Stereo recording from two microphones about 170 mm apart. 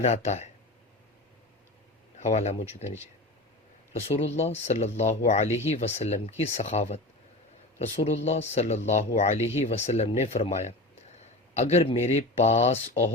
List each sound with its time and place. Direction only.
0.0 s speech: 40° left (ahead or behind)
2.1 s speech: 40° left (ahead or behind)
4.1 s speech: 40° left (ahead or behind)